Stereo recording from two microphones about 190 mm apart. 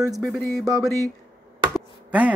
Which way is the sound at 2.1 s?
5° right (ahead or behind).